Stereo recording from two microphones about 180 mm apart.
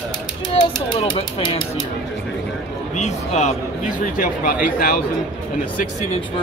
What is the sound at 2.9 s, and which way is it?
Speech, 40° left (ahead or behind).